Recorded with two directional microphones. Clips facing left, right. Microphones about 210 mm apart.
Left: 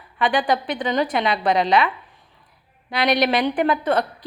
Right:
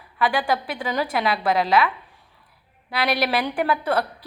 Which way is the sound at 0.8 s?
5° right (ahead or behind).